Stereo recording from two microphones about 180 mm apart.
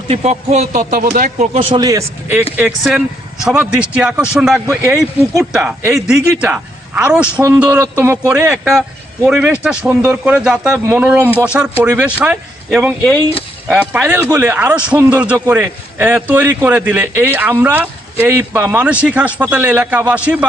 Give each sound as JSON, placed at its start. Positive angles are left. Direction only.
{"t": 0.1, "sound": "speech", "side_deg": -35}
{"t": 1.5, "sound": "speech", "side_deg": -25}
{"t": 4.6, "sound": "a man's voice", "side_deg": -15}